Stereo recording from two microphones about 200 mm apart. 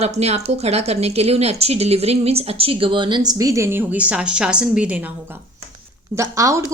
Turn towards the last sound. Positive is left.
turn(degrees=-15)  # may be behind; listen again after turning